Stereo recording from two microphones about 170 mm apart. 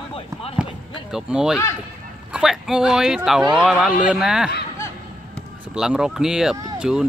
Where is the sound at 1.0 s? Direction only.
5° right (ahead or behind).